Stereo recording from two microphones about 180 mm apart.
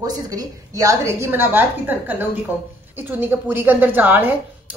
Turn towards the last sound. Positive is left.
turn(degrees=-10)  # may be behind; listen again after turning